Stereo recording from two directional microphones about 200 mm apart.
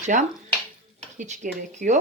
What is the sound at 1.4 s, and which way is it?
Speech, 45° right (ahead or behind).